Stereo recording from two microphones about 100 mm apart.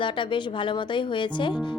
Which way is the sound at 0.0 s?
55° left (ahead or behind).